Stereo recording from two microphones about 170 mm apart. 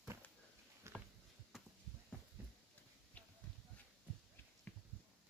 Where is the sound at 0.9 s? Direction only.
15° right (ahead or behind).